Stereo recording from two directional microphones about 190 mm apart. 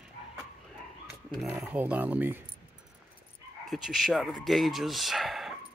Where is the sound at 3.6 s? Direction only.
Centre (ahead or behind).